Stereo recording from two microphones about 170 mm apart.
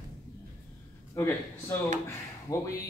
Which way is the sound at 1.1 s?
15° left (ahead or behind).